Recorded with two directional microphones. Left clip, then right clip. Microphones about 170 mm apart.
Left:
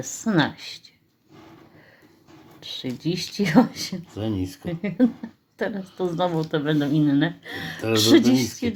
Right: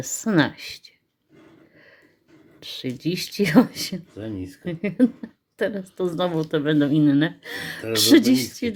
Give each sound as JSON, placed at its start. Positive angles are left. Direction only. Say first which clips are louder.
{"t": 0.0, "sound": "speech", "louder": "right 2 dB", "side_deg": -40}
{"t": 2.6, "sound": "speech", "louder": "even", "side_deg": -45}
{"t": 4.1, "sound": "speech", "louder": "left 4 dB", "side_deg": 30}
{"t": 4.6, "sound": "speech", "louder": "right 2 dB", "side_deg": -40}